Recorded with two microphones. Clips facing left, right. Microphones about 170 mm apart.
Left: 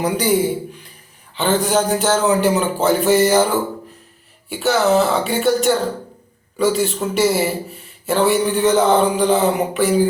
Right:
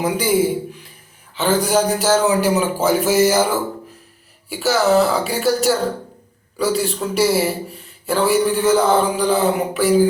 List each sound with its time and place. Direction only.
0.0 s a man's voice: 5° right (ahead or behind)
1.6 s speech: centre (ahead or behind)